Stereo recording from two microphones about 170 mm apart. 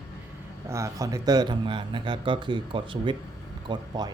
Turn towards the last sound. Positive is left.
turn(degrees=-25)  # may be behind; listen again after turning